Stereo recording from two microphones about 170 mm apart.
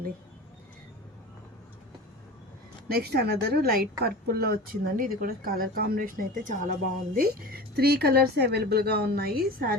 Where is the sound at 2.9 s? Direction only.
70° right (ahead or behind).